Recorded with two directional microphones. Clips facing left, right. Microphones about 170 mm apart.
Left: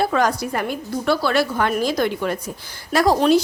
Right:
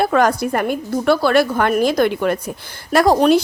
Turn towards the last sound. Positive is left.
turn(degrees=-55)  # may be behind; listen again after turning